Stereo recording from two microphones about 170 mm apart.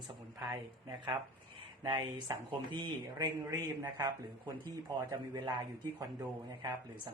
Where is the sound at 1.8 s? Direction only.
25° right (ahead or behind).